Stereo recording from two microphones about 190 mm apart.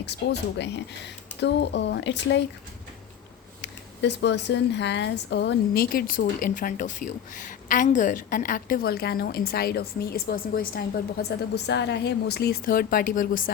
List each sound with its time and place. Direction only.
0.0 s speech: 65° left (ahead or behind)
3.6 s speech: 65° left (ahead or behind); by 13.5 s 45° left (ahead or behind)